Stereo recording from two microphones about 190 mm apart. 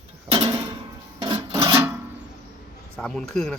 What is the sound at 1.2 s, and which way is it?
Filing, 20° right (ahead or behind).